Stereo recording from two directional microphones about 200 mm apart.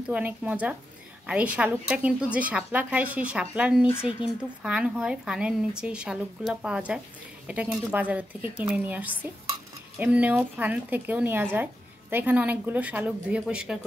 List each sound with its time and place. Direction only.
0.1 s a woman's voice: 5° right (ahead or behind)